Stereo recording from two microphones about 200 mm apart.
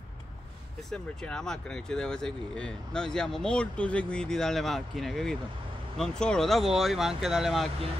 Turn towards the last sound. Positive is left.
turn(degrees=0)  # may be behind; listen again after turning